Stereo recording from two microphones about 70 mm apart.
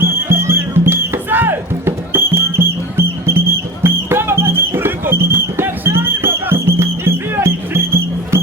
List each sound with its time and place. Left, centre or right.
0.3 s music: right